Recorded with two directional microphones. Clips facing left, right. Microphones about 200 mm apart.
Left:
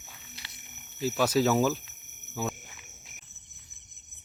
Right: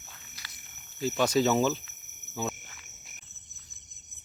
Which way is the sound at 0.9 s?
5° left (ahead or behind).